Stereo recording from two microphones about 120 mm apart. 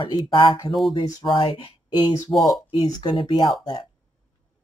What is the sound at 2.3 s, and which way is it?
Speech, centre (ahead or behind).